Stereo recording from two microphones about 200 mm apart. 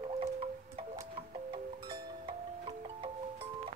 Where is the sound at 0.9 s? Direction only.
20° right (ahead or behind).